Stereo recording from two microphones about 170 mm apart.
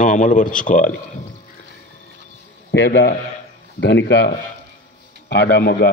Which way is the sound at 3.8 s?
90° left.